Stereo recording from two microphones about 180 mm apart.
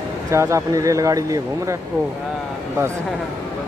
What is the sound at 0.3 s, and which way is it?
Speech, 15° right (ahead or behind).